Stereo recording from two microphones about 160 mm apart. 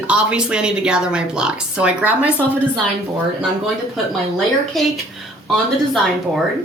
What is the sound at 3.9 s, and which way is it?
Speech, centre (ahead or behind).